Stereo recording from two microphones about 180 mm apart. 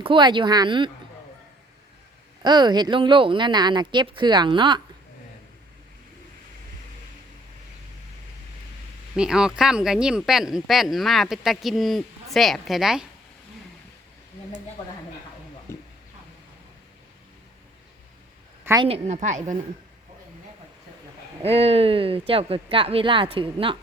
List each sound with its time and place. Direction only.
0.0 s speech: 25° right (ahead or behind)
2.4 s speech: 25° right (ahead or behind)
9.1 s speech: 5° right (ahead or behind)
14.8 s speech: 25° left (ahead or behind)
15.7 s a sound: 15° left (ahead or behind)
18.6 s a sound: 15° right (ahead or behind)
18.9 s speech: 35° right (ahead or behind)
21.4 s speech: 35° right (ahead or behind)